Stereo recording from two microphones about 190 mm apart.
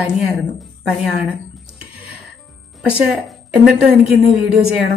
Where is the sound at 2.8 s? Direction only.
Centre (ahead or behind).